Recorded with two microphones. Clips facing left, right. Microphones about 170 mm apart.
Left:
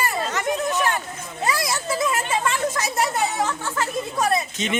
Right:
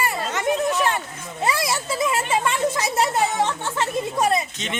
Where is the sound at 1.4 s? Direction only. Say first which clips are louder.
Right 1 dB; 25° right (ahead or behind).